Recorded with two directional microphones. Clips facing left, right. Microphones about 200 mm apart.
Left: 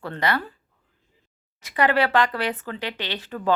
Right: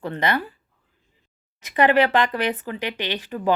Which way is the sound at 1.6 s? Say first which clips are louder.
Right 3 dB; 20° right (ahead or behind).